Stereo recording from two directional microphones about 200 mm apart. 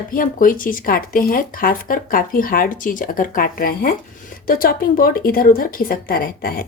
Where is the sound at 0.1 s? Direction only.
45° left (ahead or behind).